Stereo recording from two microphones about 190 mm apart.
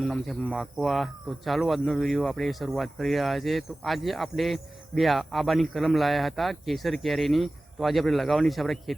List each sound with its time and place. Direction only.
0.0 s speech: centre (ahead or behind)